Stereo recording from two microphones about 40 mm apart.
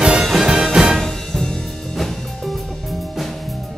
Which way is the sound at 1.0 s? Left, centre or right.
Centre.